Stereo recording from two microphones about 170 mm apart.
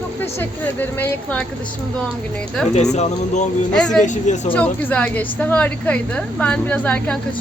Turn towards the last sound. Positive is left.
turn(degrees=10)  # may be behind; listen again after turning